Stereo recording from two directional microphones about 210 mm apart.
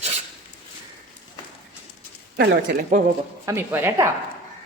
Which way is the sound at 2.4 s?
45° right (ahead or behind).